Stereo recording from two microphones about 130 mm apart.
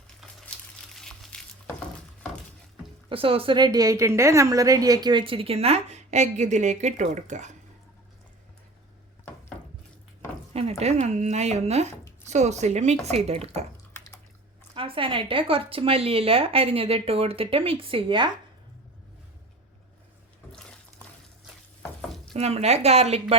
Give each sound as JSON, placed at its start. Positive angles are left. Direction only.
{"t": 0.9, "sound": "crumpling", "side_deg": 5}
{"t": 3.1, "sound": "a woman's voice", "side_deg": -45}
{"t": 10.5, "sound": "speech", "side_deg": -50}
{"t": 11.0, "sound": "a woman's voice", "side_deg": -65}
{"t": 14.8, "sound": "a woman's voice", "side_deg": -45}
{"t": 20.5, "sound": "water", "side_deg": 5}
{"t": 22.4, "sound": "speech", "side_deg": -55}